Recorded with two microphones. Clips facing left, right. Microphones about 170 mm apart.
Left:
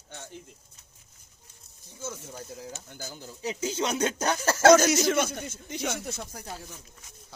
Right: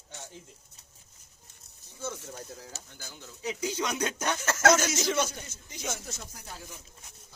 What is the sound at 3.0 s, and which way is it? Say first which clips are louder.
Speech: left 5 dB; 40° left (ahead or behind).